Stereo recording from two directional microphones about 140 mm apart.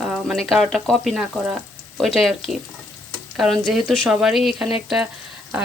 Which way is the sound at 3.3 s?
Centre (ahead or behind).